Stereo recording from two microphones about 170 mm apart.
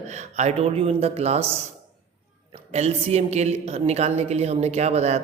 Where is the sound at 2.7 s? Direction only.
35° right (ahead or behind).